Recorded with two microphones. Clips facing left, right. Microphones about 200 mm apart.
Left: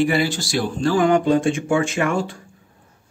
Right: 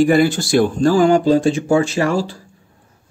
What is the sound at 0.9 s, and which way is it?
Speech, 30° right (ahead or behind).